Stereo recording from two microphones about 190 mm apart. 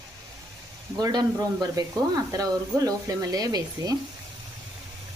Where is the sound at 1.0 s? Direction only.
20° right (ahead or behind).